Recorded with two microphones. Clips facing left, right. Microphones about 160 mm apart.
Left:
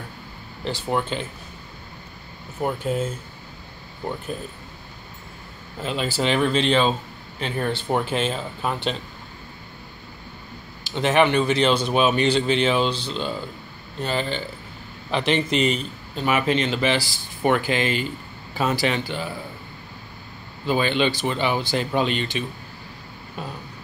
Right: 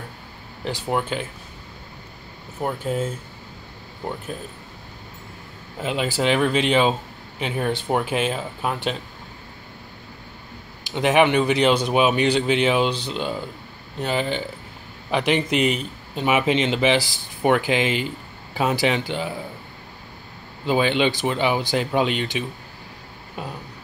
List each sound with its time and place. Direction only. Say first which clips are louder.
0.7 s a man's voice: even; 10° right (ahead or behind)
2.6 s speech: even; centre (ahead or behind)
5.8 s a man's voice: right 2 dB; 15° right (ahead or behind)
10.8 s a man's voice: right 1 dB; 15° right (ahead or behind)
20.6 s a man's voice: right 2 dB; 15° right (ahead or behind)